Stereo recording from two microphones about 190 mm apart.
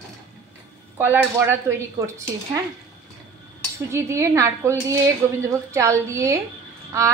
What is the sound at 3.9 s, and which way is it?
A woman's voice, 15° right (ahead or behind).